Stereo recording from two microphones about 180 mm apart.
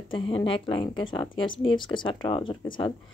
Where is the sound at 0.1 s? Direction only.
30° left (ahead or behind).